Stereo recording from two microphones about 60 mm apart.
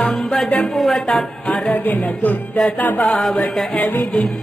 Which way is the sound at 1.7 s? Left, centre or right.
Left.